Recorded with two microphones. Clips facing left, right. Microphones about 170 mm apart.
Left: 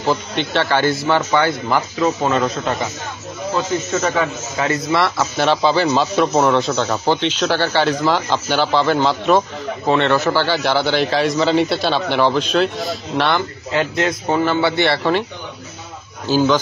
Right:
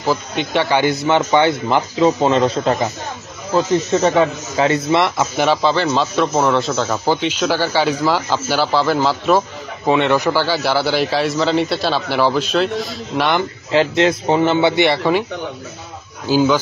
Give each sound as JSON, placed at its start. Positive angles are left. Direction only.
{"t": 0.0, "sound": "speech", "side_deg": -5}
{"t": 5.6, "sound": "speech", "side_deg": 0}
{"t": 9.8, "sound": "speech", "side_deg": -15}
{"t": 13.7, "sound": "speech", "side_deg": -25}
{"t": 16.3, "sound": "speech", "side_deg": -10}